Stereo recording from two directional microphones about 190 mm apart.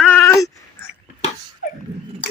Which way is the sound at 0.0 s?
10° left (ahead or behind).